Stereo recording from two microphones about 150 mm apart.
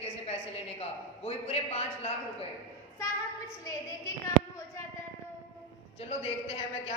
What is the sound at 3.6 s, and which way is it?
Speech, 20° left (ahead or behind).